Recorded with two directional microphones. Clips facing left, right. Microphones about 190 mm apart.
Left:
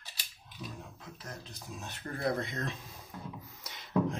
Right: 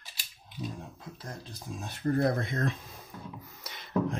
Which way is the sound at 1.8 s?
50° right (ahead or behind).